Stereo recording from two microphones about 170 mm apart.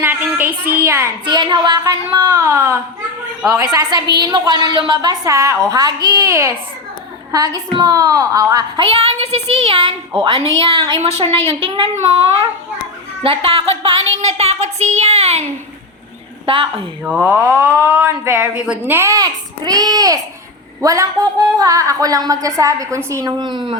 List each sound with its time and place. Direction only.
0.0 s a sound: 10° right (ahead or behind)
1.2 s a woman's voice: 25° right (ahead or behind)
13.2 s a woman's voice: 35° right (ahead or behind)
16.5 s a woman's voice: 30° right (ahead or behind)
17.0 s a child's voice: 10° right (ahead or behind)